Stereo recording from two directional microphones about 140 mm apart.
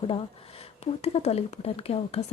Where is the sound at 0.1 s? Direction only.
45° left (ahead or behind).